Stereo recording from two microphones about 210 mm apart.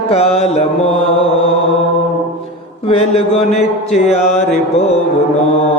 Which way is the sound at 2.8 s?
30° left (ahead or behind).